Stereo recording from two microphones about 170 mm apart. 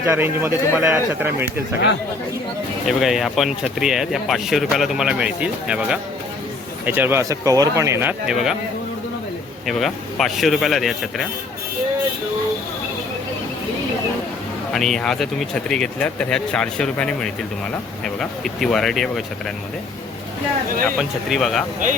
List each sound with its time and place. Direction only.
0.0 s speech: 15° right (ahead or behind)
2.8 s speech: centre (ahead or behind)
8.3 s speech: centre (ahead or behind)
9.6 s speech: centre (ahead or behind)
14.7 s speech: centre (ahead or behind)
21.0 s speech: centre (ahead or behind)